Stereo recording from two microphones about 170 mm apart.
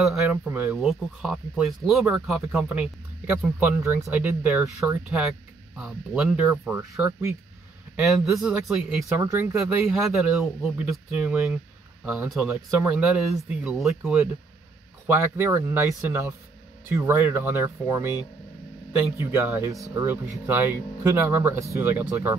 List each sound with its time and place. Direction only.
0.0 s speech: centre (ahead or behind)
0.5 s speech: 10° right (ahead or behind)
0.7 s speech: centre (ahead or behind)
6.9 s speech: 15° right (ahead or behind)
8.3 s speech: centre (ahead or behind)
9.2 s speech: 15° right (ahead or behind)
9.6 s speech: centre (ahead or behind)
15.0 s speech: 10° right (ahead or behind)